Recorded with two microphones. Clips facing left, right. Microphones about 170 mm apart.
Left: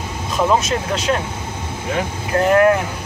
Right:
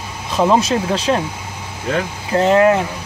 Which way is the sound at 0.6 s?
30° right (ahead or behind).